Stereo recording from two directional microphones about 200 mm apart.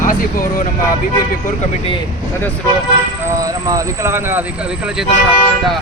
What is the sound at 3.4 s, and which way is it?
Speech, 15° right (ahead or behind).